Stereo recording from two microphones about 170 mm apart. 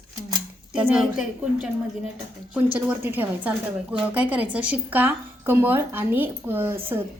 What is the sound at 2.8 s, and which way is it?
A woman's voice, 10° right (ahead or behind).